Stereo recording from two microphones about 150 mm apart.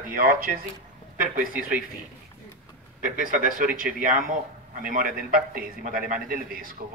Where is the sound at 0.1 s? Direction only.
75° right (ahead or behind).